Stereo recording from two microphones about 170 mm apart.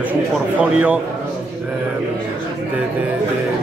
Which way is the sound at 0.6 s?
10° right (ahead or behind).